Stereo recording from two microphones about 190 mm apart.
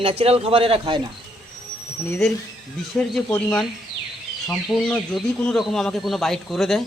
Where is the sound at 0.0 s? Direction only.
30° right (ahead or behind).